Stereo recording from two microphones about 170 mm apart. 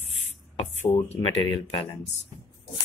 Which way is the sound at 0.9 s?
35° left (ahead or behind).